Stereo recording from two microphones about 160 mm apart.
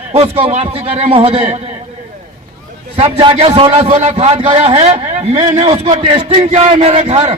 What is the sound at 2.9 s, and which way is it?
A man's voice, 40° right (ahead or behind).